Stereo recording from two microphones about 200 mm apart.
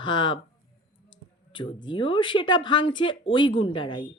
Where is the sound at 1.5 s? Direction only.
25° left (ahead or behind).